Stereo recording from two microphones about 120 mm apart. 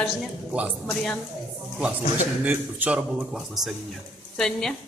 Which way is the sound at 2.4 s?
15° right (ahead or behind).